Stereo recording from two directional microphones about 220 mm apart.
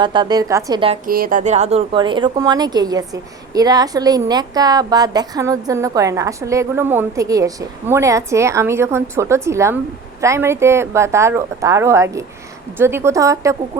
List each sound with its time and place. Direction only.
0.0 s a woman's voice: 20° right (ahead or behind)
1.0 s speech: 40° right (ahead or behind); by 13.6 s 15° right (ahead or behind)